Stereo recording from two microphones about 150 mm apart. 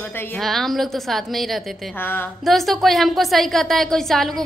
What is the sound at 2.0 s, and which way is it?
Speech, 15° left (ahead or behind).